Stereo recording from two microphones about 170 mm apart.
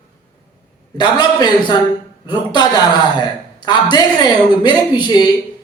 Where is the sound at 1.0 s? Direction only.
25° left (ahead or behind).